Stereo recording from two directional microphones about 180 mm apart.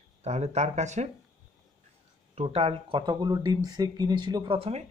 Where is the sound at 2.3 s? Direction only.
30° right (ahead or behind).